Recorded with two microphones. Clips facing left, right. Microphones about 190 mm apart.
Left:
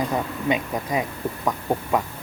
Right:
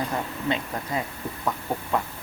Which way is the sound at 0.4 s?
15° left (ahead or behind).